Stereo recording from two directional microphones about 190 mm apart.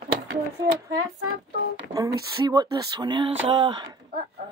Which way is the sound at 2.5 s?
20° right (ahead or behind).